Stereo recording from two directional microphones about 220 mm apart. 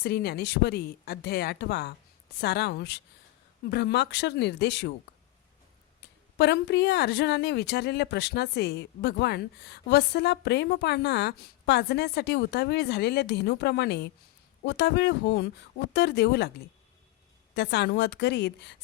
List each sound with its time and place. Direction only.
0.0 s speech: 45° left (ahead or behind)
6.3 s speech: 50° left (ahead or behind)
17.5 s speech: 50° left (ahead or behind)